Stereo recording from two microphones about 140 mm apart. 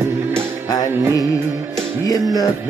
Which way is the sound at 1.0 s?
20° right (ahead or behind).